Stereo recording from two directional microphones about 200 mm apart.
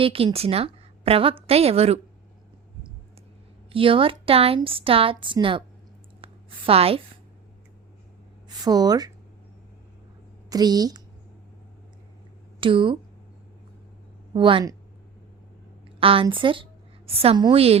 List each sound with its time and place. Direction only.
0.0 s a woman's voice: 25° right (ahead or behind)
3.7 s a woman's voice: 25° right (ahead or behind)
6.2 s a sound: 30° right (ahead or behind)
8.6 s a woman's voice: 20° right (ahead or behind)
10.5 s a woman's voice: 20° right (ahead or behind)
12.5 s speech: 25° right (ahead or behind)
14.3 s a woman's voice: 25° right (ahead or behind)
16.0 s a woman's voice: 25° right (ahead or behind)